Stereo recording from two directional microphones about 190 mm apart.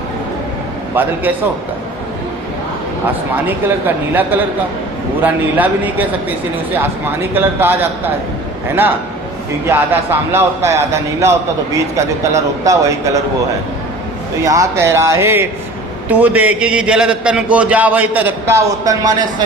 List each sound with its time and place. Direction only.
0.9 s a man's voice: 10° right (ahead or behind)
3.4 s a man's voice: 10° right (ahead or behind)
9.6 s a man's voice: 10° right (ahead or behind)
14.4 s a man's voice: 15° right (ahead or behind)